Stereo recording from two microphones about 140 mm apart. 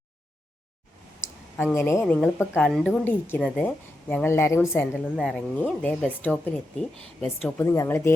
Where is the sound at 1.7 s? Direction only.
20° left (ahead or behind).